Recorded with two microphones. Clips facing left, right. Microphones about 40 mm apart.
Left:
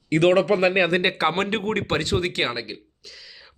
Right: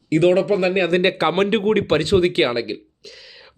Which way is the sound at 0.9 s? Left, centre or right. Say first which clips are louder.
Right 4 dB; centre.